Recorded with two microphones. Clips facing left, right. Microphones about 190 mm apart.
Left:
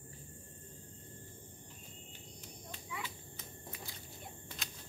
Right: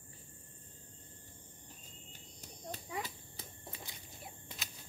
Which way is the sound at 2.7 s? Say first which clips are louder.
Right 4 dB; 40° right (ahead or behind).